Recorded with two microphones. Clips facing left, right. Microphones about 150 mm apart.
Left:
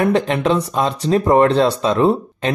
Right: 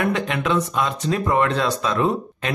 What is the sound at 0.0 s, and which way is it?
Speech, 35° left (ahead or behind).